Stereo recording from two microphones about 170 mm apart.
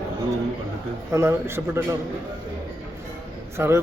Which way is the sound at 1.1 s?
15° right (ahead or behind).